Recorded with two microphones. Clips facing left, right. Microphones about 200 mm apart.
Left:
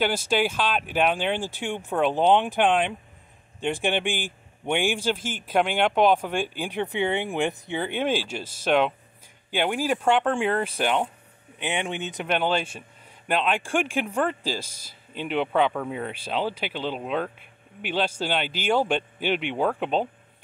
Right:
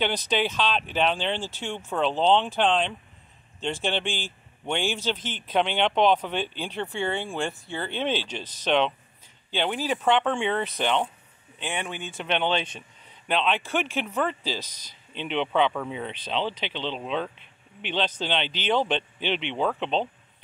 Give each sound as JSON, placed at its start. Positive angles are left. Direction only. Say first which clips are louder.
{"t": 0.0, "sound": "a man's voice", "louder": "left 2 dB", "side_deg": 10}
{"t": 12.3, "sound": "a man's voice", "louder": "left 1 dB", "side_deg": 5}